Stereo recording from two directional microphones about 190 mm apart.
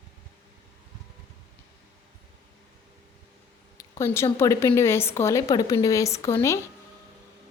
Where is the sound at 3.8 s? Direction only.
15° left (ahead or behind).